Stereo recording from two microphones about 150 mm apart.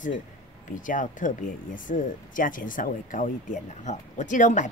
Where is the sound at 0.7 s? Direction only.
60° left (ahead or behind).